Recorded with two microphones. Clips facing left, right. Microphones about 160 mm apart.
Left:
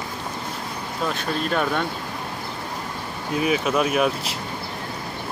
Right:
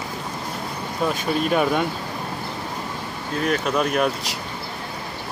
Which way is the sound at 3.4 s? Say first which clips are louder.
Even; 5° left (ahead or behind).